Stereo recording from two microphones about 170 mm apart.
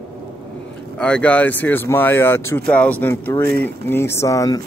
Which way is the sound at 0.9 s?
5° left (ahead or behind).